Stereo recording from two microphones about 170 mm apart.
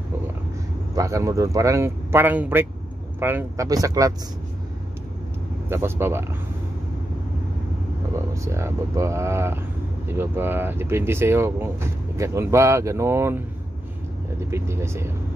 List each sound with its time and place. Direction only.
0.9 s speech: 20° right (ahead or behind)
5.7 s speech: 15° right (ahead or behind)
8.1 s speech: 15° right (ahead or behind)
14.5 s speech: 15° right (ahead or behind)